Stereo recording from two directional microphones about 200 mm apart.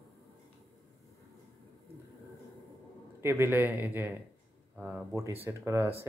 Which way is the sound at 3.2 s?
10° right (ahead or behind).